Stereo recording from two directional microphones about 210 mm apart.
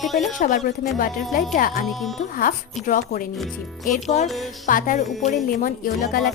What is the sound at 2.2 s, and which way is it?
A woman's voice, 40° left (ahead or behind).